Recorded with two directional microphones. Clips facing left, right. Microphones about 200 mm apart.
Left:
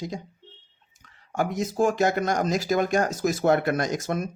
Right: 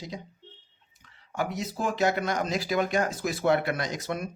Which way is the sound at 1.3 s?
45° left (ahead or behind).